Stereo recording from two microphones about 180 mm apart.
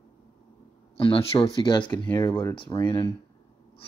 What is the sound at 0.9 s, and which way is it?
Speech, 30° left (ahead or behind).